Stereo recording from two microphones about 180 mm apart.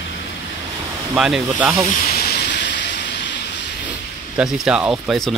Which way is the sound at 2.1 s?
55° left (ahead or behind).